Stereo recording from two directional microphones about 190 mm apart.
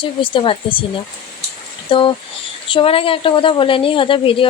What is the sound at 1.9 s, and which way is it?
Speech, 25° left (ahead or behind).